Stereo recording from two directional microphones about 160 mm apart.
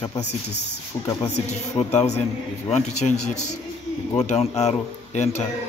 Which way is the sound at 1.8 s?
45° left (ahead or behind).